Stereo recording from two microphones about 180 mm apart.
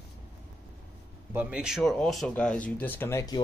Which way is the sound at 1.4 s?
5° right (ahead or behind).